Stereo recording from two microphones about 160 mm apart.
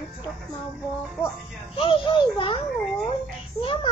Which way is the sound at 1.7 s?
35° left (ahead or behind).